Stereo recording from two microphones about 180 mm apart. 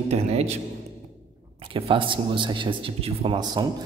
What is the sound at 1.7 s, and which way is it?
Speech, 30° right (ahead or behind).